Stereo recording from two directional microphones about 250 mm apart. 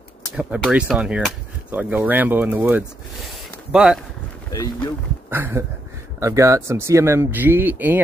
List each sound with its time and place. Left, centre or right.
0.4 s speech: centre
5.3 s speech: centre